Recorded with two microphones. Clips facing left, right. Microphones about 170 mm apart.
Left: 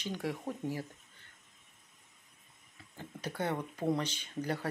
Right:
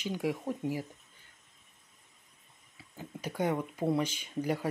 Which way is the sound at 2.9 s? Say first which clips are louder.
Right 3 dB; 10° right (ahead or behind).